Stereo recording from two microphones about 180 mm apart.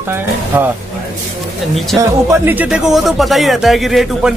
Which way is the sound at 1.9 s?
15° right (ahead or behind).